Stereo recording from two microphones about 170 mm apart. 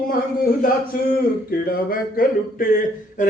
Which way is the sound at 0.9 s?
55° left (ahead or behind).